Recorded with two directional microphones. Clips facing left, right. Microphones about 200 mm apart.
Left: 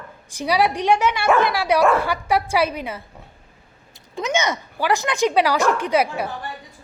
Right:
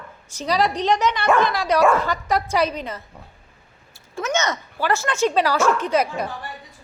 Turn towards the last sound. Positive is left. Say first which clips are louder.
# left 1 dB
turn(degrees=10)  # may be behind; listen again after turning